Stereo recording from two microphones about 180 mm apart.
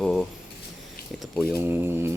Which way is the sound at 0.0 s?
Centre (ahead or behind).